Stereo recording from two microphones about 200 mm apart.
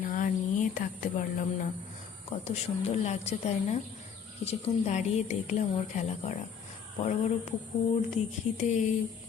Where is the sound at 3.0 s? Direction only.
35° left (ahead or behind).